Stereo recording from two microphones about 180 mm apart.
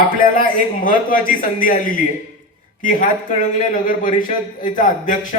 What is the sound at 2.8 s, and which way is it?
A man's voice, 50° left (ahead or behind).